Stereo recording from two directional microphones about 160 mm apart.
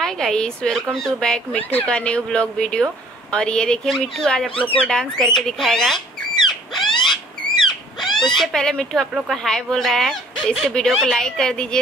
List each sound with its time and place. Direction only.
0.0 s speech: 5° left (ahead or behind)
6.4 s a sound: centre (ahead or behind)
7.0 s rodents: 30° left (ahead or behind)
8.0 s owl: centre (ahead or behind)
8.4 s speech: 5° left (ahead or behind)